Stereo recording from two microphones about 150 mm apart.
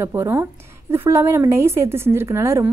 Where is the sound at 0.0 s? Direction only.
15° right (ahead or behind).